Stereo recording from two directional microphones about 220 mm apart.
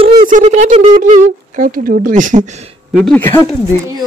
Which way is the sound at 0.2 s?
35° right (ahead or behind).